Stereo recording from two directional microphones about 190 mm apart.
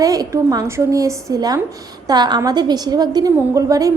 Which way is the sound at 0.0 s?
20° right (ahead or behind).